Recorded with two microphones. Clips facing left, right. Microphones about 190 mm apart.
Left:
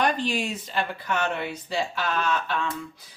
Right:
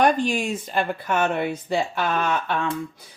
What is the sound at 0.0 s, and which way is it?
Speech, 50° right (ahead or behind).